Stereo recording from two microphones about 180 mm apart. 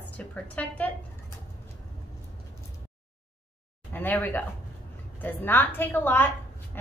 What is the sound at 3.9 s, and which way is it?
Speech, 10° left (ahead or behind).